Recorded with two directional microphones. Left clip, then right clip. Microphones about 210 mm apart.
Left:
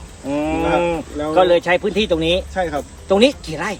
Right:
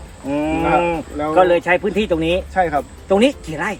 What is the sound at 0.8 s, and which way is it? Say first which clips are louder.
Livestock: right 1 dB; 15° left (ahead or behind).